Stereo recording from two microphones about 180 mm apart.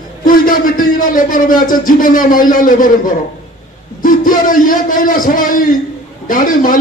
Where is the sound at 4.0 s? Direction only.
50° left (ahead or behind).